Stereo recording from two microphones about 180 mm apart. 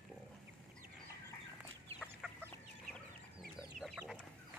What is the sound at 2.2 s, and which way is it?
Chicken, centre (ahead or behind).